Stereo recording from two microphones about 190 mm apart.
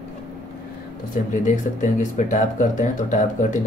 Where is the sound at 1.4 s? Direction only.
40° left (ahead or behind).